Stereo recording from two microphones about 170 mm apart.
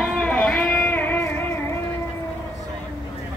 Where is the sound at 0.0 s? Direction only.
10° left (ahead or behind).